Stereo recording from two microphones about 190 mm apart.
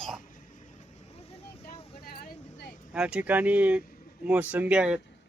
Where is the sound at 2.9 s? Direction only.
5° right (ahead or behind).